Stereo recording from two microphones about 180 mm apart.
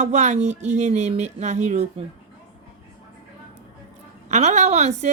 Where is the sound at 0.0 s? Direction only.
40° right (ahead or behind).